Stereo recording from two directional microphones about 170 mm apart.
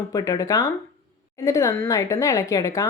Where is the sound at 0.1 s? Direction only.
20° left (ahead or behind).